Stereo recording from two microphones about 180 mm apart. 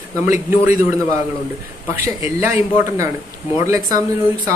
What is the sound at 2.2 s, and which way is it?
Speech, 15° right (ahead or behind).